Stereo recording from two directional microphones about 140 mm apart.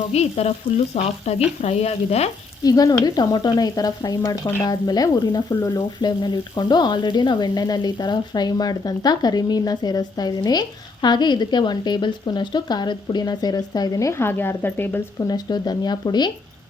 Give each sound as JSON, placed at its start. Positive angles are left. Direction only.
{"t": 0.1, "sound": "speech", "side_deg": 50}
{"t": 2.6, "sound": "speech", "side_deg": 25}
{"t": 15.3, "sound": "speech", "side_deg": 30}